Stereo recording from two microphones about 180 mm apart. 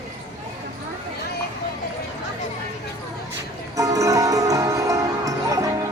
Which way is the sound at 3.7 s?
20° right (ahead or behind).